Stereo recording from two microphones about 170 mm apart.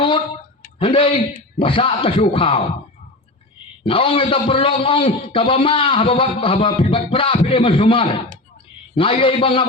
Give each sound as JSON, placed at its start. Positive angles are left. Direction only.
{"t": 0.8, "sound": "a man's voice", "side_deg": 30}
{"t": 3.8, "sound": "a man's voice", "side_deg": 30}